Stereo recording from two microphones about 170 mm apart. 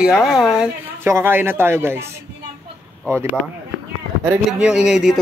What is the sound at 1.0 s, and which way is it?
Speech, 15° right (ahead or behind).